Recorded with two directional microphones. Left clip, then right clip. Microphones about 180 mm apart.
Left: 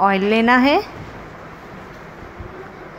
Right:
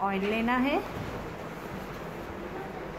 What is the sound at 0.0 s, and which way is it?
Speech, 50° left (ahead or behind).